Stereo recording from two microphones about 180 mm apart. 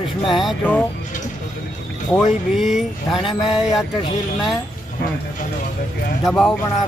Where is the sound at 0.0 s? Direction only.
30° left (ahead or behind).